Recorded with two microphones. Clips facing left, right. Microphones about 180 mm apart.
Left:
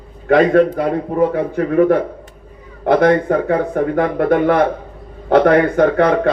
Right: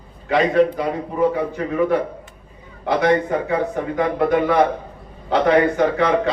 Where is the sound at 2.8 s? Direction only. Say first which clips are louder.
Left 5 dB; 55° left (ahead or behind).